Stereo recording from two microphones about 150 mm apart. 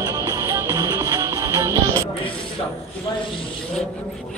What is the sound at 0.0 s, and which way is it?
Music, 25° right (ahead or behind).